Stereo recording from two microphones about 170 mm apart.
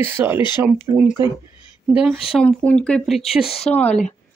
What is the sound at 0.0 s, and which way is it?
Speech, 15° right (ahead or behind).